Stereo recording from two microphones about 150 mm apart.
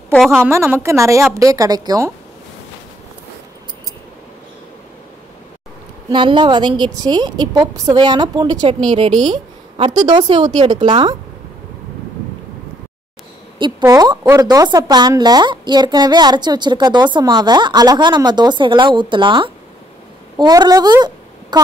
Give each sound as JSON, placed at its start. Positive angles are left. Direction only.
{"t": 0.1, "sound": "a woman's voice", "side_deg": 0}
{"t": 0.4, "sound": "a woman's voice", "side_deg": -15}
{"t": 6.0, "sound": "a woman's voice", "side_deg": -30}
{"t": 13.6, "sound": "a woman's voice", "side_deg": -30}